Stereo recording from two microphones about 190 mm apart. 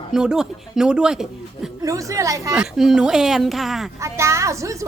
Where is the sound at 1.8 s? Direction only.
15° right (ahead or behind).